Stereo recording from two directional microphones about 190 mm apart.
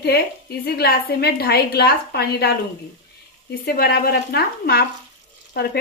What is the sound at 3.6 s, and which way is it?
A woman's voice, 55° left (ahead or behind).